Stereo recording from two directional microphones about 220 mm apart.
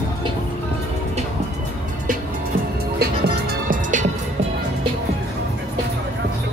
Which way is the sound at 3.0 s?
45° right (ahead or behind).